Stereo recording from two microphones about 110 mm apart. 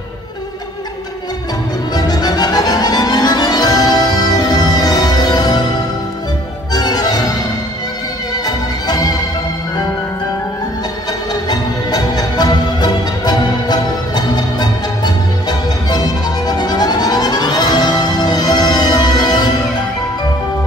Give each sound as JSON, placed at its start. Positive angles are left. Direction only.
{"t": 2.0, "sound": "music", "side_deg": 35}
{"t": 6.7, "sound": "music", "side_deg": 35}
{"t": 8.5, "sound": "music", "side_deg": 35}
{"t": 11.4, "sound": "music", "side_deg": 40}